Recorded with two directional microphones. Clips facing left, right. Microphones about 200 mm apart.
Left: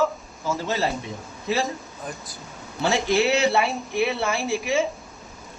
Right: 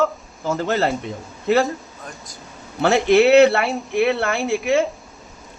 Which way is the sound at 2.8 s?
60° right (ahead or behind).